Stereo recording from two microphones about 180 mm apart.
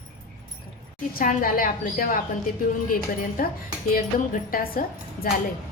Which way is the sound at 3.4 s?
55° left (ahead or behind).